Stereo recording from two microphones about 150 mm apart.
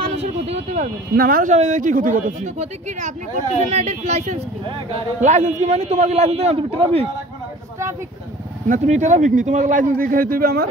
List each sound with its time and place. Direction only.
0.0 s vehicle: 45° right (ahead or behind)
1.1 s speech: 70° right (ahead or behind)
1.5 s speech: 55° right (ahead or behind)
3.6 s a man's voice: 50° right (ahead or behind)
8.6 s speech: 55° right (ahead or behind); by 10.7 s 85° right